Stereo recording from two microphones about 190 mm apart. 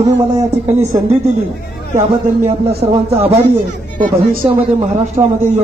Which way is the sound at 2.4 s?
30° right (ahead or behind).